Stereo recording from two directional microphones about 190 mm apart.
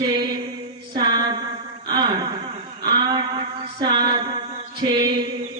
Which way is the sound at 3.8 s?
25° right (ahead or behind).